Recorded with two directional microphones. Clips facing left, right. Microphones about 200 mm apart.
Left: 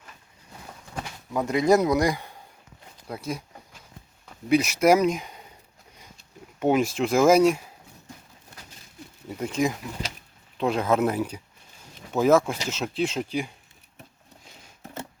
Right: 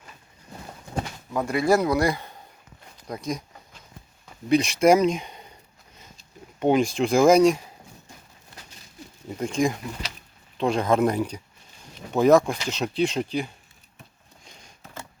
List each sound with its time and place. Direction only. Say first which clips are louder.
1.5 s speech: left 1 dB; 20° left (ahead or behind)
4.4 s speech: right 1 dB; 5° left (ahead or behind)
6.6 s speech: right 1 dB; 5° left (ahead or behind)
9.3 s speech: right 2 dB; 5° left (ahead or behind)
14.4 s a sound: right 2 dB; 5° left (ahead or behind)